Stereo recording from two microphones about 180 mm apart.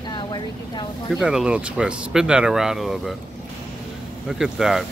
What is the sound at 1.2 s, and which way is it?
Speech, 5° right (ahead or behind).